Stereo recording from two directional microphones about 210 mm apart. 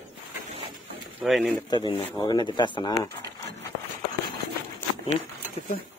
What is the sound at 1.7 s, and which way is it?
Speech, 15° left (ahead or behind).